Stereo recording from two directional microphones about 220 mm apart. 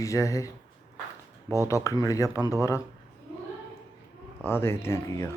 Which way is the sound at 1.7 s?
15° left (ahead or behind).